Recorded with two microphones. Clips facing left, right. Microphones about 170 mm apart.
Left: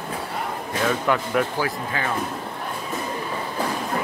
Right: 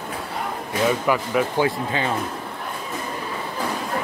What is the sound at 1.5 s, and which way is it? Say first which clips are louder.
Speech: right 4 dB; 20° right (ahead or behind).